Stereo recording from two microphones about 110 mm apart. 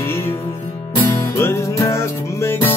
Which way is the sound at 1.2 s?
25° left (ahead or behind).